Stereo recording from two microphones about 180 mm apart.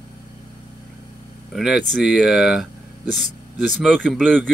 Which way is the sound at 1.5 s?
Centre (ahead or behind).